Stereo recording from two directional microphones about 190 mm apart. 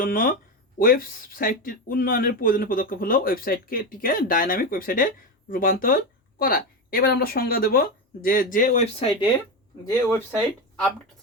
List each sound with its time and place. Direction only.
0.0 s speech: 50° left (ahead or behind)
10.3 s speech: centre (ahead or behind)